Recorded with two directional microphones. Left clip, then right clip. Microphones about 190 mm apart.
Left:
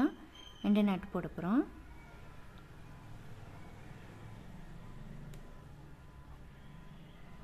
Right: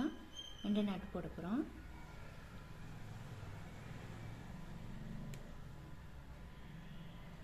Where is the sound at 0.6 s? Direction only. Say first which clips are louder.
Left 8 dB; 30° left (ahead or behind).